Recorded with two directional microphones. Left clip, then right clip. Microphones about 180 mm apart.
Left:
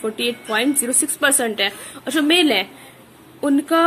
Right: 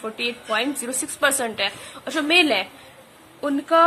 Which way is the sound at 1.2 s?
10° right (ahead or behind).